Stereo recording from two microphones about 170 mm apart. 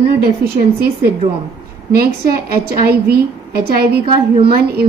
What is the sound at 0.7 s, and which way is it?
A woman's voice, 60° right (ahead or behind).